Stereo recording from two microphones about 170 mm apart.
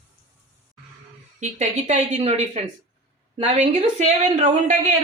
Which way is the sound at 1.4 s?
40° right (ahead or behind).